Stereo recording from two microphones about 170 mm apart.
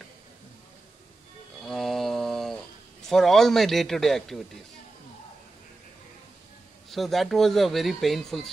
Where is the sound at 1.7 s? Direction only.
Centre (ahead or behind).